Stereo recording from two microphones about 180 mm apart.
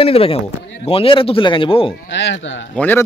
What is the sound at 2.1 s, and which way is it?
Speech, 80° left.